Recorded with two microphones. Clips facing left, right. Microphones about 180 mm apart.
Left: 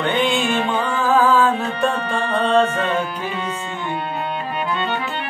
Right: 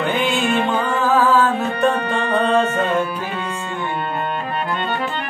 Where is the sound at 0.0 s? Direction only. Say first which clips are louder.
Even; 5° right (ahead or behind).